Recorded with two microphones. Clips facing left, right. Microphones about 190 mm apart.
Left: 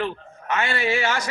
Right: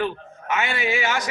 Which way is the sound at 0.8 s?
15° right (ahead or behind).